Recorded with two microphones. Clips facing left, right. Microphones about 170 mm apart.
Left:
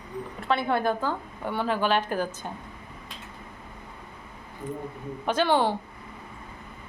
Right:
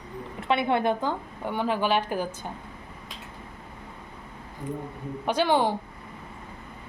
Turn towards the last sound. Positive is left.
turn(degrees=-15)  # may be behind; listen again after turning